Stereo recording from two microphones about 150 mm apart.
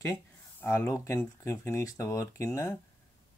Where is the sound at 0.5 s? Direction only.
15° left (ahead or behind).